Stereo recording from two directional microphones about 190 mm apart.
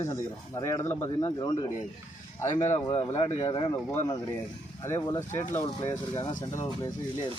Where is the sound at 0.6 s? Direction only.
15° left (ahead or behind).